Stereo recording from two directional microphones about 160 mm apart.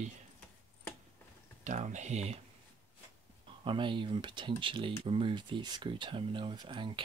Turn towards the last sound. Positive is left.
turn(degrees=-30)  # may be behind; listen again after turning